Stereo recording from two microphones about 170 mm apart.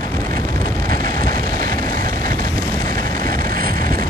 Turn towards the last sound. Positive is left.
turn(degrees=-55)  # may be behind; listen again after turning